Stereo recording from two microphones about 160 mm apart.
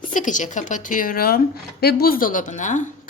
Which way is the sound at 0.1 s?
55° left (ahead or behind).